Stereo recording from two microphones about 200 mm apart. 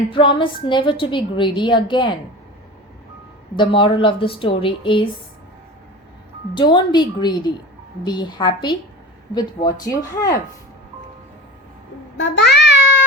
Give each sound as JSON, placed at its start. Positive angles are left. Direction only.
{"t": 0.1, "sound": "a woman's voice", "side_deg": 25}
{"t": 3.5, "sound": "a woman's voice", "side_deg": 25}
{"t": 6.5, "sound": "a woman's voice", "side_deg": 25}
{"t": 12.1, "sound": "babbling", "side_deg": 60}